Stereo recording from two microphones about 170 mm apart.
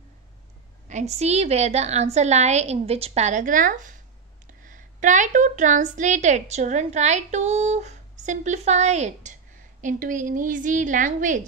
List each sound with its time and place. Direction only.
0.8 s a woman's voice: 40° right (ahead or behind)